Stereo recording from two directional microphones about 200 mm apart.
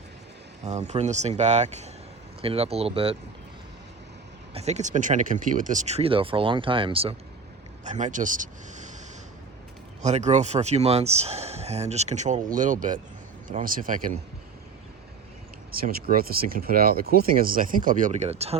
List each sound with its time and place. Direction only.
0.6 s speech: 35° right (ahead or behind)
4.5 s speech: 35° right (ahead or behind)
10.0 s speech: 35° right (ahead or behind)
15.7 s speech: 50° right (ahead or behind); by 18.5 s 30° right (ahead or behind)